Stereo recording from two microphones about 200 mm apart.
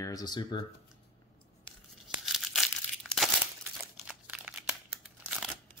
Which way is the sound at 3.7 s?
Centre (ahead or behind).